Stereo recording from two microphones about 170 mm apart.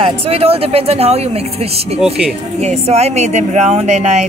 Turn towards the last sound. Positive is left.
turn(degrees=-40)  # may be behind; listen again after turning